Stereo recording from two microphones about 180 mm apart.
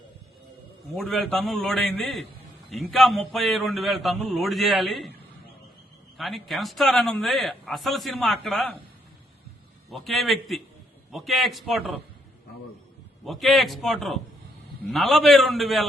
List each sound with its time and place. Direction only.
0.9 s a man's voice: centre (ahead or behind)
6.1 s a man's voice: centre (ahead or behind)
9.9 s a man's voice: centre (ahead or behind)
13.2 s a man's voice: centre (ahead or behind)